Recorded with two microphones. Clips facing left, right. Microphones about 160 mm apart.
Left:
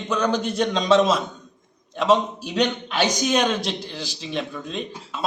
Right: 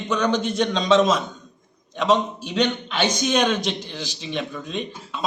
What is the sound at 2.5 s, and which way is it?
Speech, 40° left (ahead or behind).